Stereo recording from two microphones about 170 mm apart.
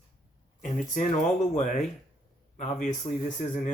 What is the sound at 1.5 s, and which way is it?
Speech, 45° left (ahead or behind).